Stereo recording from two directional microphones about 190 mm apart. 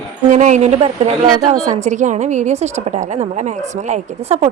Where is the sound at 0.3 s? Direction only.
40° right (ahead or behind).